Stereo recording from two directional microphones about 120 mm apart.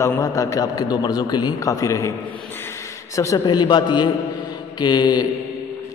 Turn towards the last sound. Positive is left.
turn(degrees=35)  # may be behind; listen again after turning